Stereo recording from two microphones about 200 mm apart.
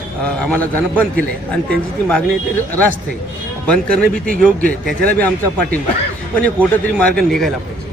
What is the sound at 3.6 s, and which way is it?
A man's voice, 5° left (ahead or behind).